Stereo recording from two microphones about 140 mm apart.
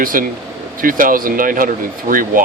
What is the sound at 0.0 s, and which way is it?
Speech, 80° right.